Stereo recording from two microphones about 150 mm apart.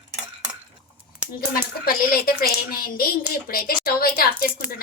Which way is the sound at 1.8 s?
90° left.